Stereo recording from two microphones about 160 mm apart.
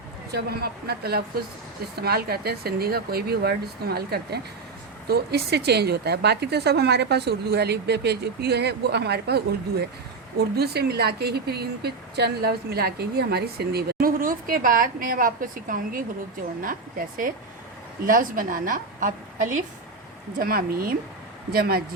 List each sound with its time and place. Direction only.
0.3 s a woman's voice: 80° right; by 19.6 s 55° right (ahead or behind)
20.4 s speech: 65° right (ahead or behind)